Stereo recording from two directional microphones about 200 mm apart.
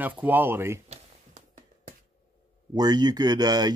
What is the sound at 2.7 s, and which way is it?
Speech, 20° right (ahead or behind).